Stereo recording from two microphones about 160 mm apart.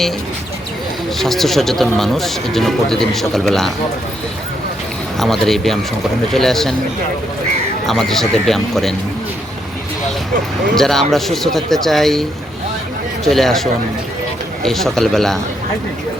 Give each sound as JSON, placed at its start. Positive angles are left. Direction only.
{"t": 1.2, "sound": "speech", "side_deg": 0}
{"t": 5.2, "sound": "speech", "side_deg": 0}
{"t": 7.9, "sound": "speech", "side_deg": 0}
{"t": 10.8, "sound": "speech", "side_deg": 0}
{"t": 13.2, "sound": "speech", "side_deg": 0}